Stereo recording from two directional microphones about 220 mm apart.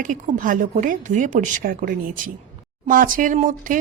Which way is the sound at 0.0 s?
35° right (ahead or behind).